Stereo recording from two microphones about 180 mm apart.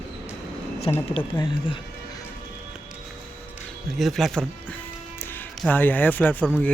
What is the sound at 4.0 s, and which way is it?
Speech, centre (ahead or behind).